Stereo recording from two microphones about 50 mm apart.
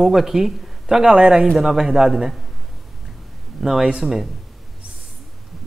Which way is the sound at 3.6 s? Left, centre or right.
Centre.